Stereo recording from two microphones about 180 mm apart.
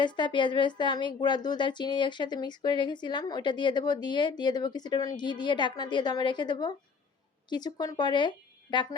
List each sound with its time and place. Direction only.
0.0 s speech: 25° left (ahead or behind)